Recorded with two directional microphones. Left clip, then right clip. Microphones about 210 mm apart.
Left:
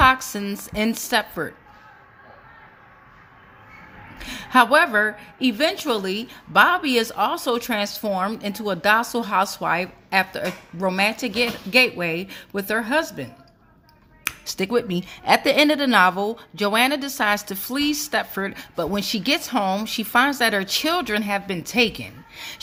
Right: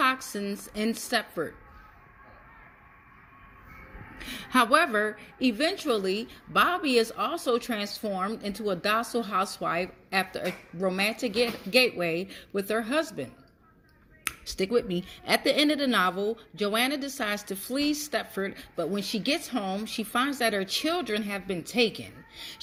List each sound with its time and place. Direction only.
0.0 s a woman's voice: 20° left (ahead or behind)
4.2 s a woman's voice: 10° left (ahead or behind)